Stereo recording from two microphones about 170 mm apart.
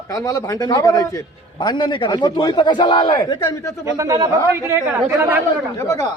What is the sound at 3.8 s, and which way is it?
Speech, 20° right (ahead or behind).